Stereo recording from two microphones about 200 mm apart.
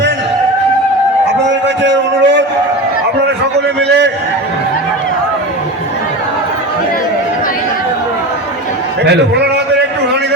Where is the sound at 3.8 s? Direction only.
60° right (ahead or behind).